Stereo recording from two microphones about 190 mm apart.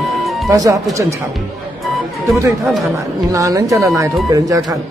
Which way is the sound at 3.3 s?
15° right (ahead or behind).